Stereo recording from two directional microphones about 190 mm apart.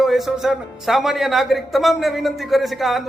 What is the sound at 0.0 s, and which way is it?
Speech, centre (ahead or behind).